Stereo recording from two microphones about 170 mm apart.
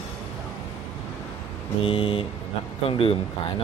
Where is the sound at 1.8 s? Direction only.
30° left (ahead or behind).